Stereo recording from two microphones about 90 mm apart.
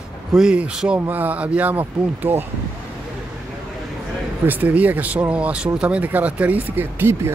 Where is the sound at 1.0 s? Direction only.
20° right (ahead or behind).